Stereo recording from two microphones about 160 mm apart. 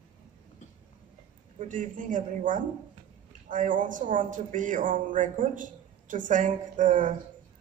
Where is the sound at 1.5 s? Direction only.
55° right (ahead or behind).